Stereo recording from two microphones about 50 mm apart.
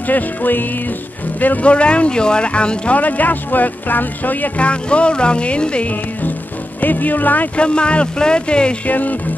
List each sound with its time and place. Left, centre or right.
0.1 s speech: left
3.0 s speech: left
4.6 s speech: left
6.8 s speech: left
7.5 s speech: left
8.8 s speech: left